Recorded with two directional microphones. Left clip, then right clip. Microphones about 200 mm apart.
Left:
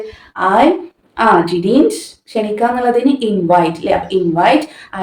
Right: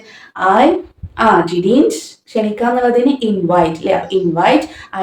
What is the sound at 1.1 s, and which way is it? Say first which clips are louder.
A woman's voice: even; 15° left (ahead or behind).